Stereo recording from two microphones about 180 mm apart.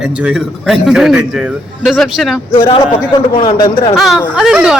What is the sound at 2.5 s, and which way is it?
A man's voice, 20° left (ahead or behind).